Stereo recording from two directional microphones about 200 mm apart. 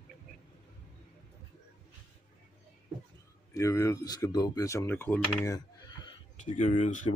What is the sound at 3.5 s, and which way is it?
Speech, 15° left (ahead or behind).